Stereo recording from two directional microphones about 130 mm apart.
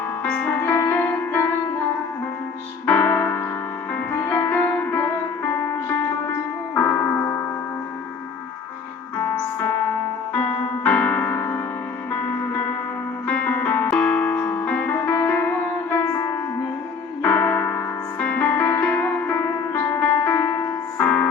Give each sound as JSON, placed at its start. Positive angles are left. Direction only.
{"t": 0.3, "sound": "music", "side_deg": 10}
{"t": 2.8, "sound": "music", "side_deg": 10}
{"t": 6.7, "sound": "music", "side_deg": 20}
{"t": 10.8, "sound": "music", "side_deg": 10}
{"t": 13.2, "sound": "music", "side_deg": 10}